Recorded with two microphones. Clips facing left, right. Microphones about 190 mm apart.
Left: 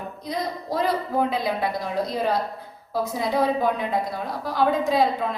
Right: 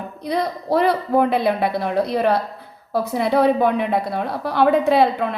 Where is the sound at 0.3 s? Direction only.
65° right (ahead or behind).